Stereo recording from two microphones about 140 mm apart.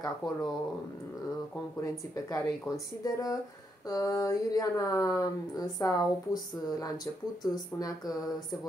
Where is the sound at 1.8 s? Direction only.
25° left (ahead or behind).